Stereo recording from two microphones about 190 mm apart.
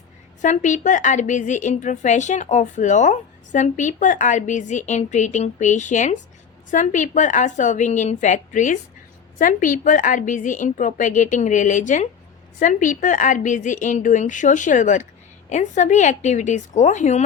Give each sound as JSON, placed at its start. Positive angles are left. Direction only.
{"t": 0.4, "sound": "a woman's voice", "side_deg": 40}